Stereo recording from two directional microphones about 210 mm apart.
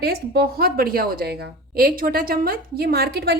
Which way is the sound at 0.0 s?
50° right (ahead or behind).